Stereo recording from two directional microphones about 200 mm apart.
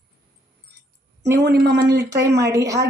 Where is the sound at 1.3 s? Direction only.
55° right (ahead or behind).